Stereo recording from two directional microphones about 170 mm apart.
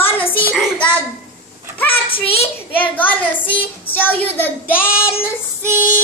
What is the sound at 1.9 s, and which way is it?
Speech, 35° left (ahead or behind).